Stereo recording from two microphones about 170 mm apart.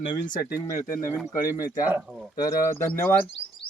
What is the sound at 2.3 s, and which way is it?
Speech, 20° left (ahead or behind).